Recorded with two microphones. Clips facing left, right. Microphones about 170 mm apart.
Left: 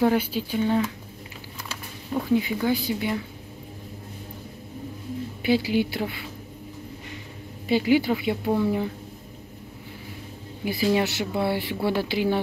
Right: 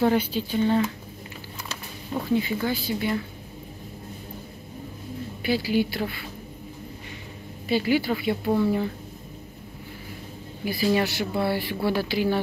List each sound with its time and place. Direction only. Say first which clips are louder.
0.0 s a woman's voice: even; 10° left (ahead or behind)
2.3 s a woman's voice: left 2 dB; 15° left (ahead or behind)
5.4 s speech: left 1 dB; 20° left (ahead or behind)
7.6 s a woman's voice: left 2 dB; 15° left (ahead or behind)
10.6 s speech: even; 20° left (ahead or behind)